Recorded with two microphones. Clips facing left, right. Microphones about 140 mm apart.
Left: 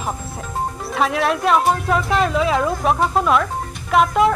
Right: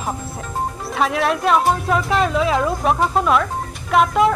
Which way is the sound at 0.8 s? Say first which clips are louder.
Even; centre (ahead or behind).